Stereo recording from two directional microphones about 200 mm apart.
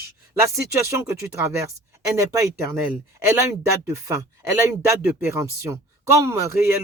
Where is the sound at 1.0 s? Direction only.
15° right (ahead or behind).